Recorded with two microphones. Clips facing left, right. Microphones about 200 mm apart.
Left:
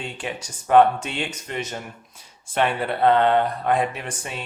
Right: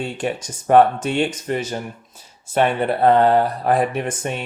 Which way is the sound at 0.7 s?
45° right (ahead or behind).